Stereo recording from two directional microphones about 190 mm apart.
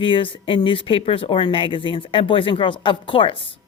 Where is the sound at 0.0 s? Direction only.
25° left (ahead or behind).